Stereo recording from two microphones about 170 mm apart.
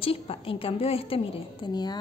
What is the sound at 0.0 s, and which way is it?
A woman's voice, 35° left (ahead or behind).